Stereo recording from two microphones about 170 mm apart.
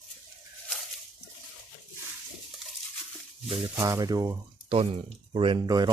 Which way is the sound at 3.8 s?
20° right (ahead or behind).